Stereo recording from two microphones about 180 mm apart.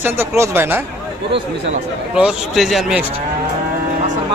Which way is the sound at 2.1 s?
Centre (ahead or behind).